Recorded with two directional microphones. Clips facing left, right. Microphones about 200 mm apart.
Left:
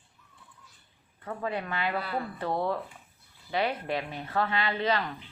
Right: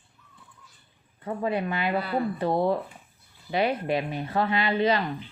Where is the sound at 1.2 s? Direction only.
20° right (ahead or behind).